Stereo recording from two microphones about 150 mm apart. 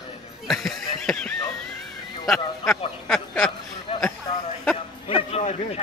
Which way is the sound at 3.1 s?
5° left (ahead or behind).